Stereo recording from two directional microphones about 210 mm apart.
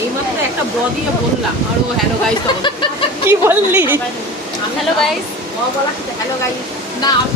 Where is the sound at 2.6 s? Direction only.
20° left (ahead or behind).